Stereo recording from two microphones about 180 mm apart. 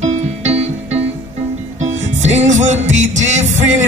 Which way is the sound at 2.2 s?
40° right (ahead or behind).